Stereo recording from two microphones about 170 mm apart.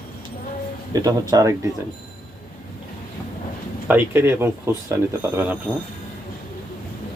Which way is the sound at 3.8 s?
10° right (ahead or behind).